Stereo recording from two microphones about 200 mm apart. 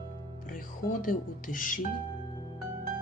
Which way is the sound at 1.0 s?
45° left (ahead or behind).